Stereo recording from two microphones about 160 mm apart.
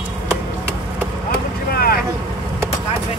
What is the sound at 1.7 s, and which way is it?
Boat, 70° left (ahead or behind).